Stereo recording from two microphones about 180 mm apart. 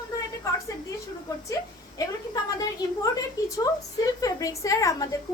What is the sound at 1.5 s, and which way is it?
Speech, 20° left (ahead or behind).